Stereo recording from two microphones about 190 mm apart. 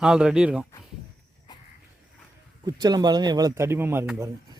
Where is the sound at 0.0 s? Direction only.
5° right (ahead or behind).